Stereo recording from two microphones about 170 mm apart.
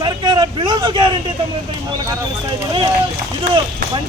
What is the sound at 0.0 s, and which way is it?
Vehicle, 25° right (ahead or behind).